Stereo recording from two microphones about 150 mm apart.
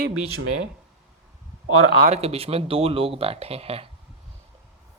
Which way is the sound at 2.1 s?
40° right (ahead or behind).